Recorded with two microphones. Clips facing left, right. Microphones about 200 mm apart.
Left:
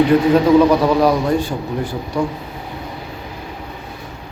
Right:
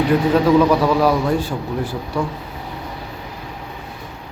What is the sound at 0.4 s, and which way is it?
Speech, 15° left (ahead or behind).